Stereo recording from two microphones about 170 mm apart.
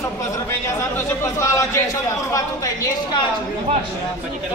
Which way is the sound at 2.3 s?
20° left (ahead or behind).